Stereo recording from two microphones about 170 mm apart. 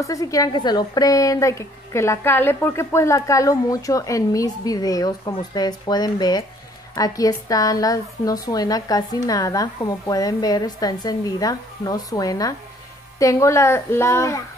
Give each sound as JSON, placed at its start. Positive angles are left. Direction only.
{"t": 0.0, "sound": "a woman's voice", "side_deg": 20}